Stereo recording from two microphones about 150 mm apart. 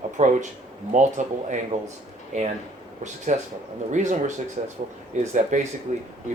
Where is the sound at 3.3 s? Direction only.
55° right (ahead or behind).